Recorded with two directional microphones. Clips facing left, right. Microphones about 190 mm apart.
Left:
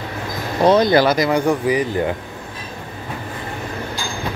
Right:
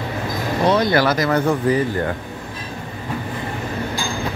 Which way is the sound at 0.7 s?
15° left (ahead or behind).